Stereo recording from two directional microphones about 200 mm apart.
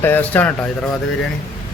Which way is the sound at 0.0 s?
10° left (ahead or behind).